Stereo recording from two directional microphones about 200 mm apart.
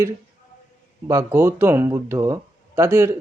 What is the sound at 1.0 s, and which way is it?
Speech, 15° right (ahead or behind).